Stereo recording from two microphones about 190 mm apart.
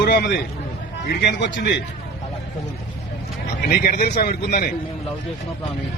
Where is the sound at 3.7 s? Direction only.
55° left (ahead or behind).